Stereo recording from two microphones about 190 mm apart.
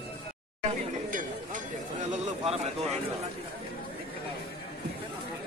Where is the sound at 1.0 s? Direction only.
45° right (ahead or behind).